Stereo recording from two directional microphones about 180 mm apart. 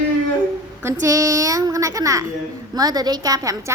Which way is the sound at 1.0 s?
15° right (ahead or behind).